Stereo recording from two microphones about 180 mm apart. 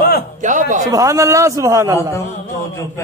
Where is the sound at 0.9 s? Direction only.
20° right (ahead or behind).